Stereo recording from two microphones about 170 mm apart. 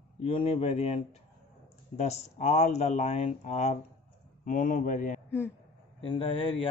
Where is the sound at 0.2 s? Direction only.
35° left (ahead or behind); by 5.2 s 50° left (ahead or behind).